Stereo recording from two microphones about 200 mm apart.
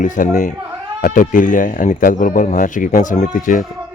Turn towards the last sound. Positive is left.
turn(degrees=40)  # may be behind; listen again after turning